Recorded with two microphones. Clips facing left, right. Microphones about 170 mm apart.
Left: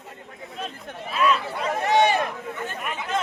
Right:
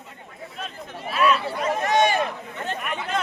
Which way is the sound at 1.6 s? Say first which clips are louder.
Left 3 dB; 30° left (ahead or behind).